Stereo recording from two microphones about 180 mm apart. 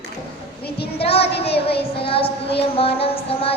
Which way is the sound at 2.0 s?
30° left (ahead or behind).